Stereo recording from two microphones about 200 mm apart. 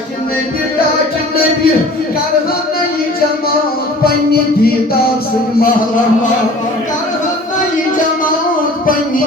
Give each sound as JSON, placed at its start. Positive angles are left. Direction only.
{"t": 4.0, "sound": "music", "side_deg": 50}